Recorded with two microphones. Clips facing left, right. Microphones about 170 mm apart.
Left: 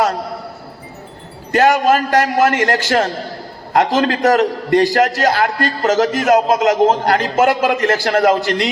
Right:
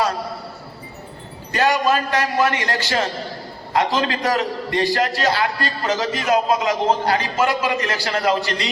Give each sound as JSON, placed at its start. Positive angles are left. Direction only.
{"t": 1.5, "sound": "a man's voice", "side_deg": 50}